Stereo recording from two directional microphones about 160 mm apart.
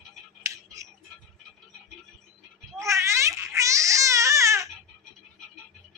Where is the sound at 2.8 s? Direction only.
15° right (ahead or behind).